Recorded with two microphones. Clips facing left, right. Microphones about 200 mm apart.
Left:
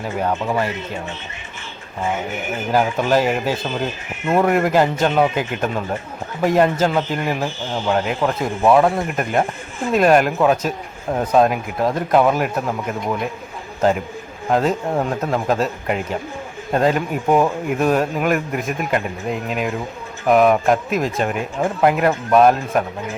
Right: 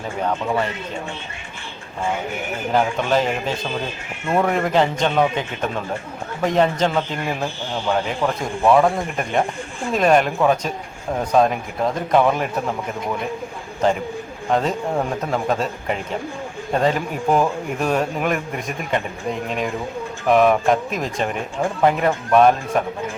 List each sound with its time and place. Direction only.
0.2 s a man's voice: 5° left (ahead or behind)
2.7 s a man's voice: 5° left (ahead or behind)
13.8 s speech: 5° left (ahead or behind)